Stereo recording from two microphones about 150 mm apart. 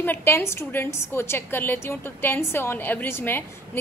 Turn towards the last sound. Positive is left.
turn(degrees=15)  # may be behind; listen again after turning